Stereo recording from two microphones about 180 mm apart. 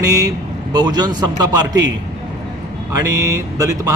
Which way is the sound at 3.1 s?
20° right (ahead or behind).